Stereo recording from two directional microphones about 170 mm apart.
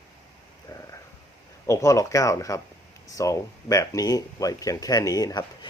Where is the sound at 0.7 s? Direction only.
20° left (ahead or behind).